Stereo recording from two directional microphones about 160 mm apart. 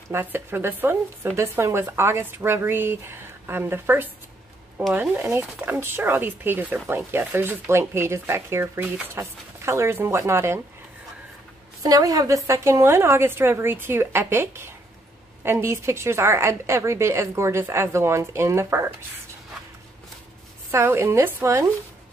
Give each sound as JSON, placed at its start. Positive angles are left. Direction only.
{"t": 0.1, "sound": "speech", "side_deg": -15}
{"t": 11.8, "sound": "speech", "side_deg": -20}
{"t": 20.7, "sound": "speech", "side_deg": -15}